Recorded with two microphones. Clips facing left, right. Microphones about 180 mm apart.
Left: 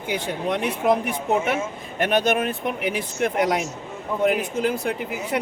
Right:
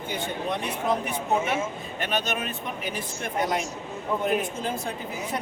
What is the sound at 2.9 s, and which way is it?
Speech, 75° left (ahead or behind).